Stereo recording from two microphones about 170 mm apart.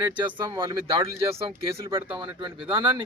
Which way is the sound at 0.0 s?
25° right (ahead or behind).